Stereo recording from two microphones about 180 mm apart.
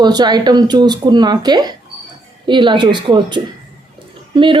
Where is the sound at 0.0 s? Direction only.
25° right (ahead or behind).